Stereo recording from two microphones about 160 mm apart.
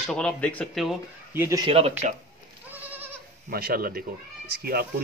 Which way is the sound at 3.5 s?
70° right (ahead or behind).